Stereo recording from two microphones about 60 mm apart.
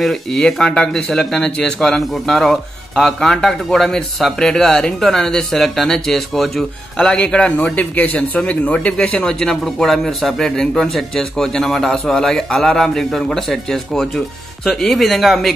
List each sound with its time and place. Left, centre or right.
0.0 s speech: centre
7.0 s a man's voice: centre
9.2 s a man's voice: centre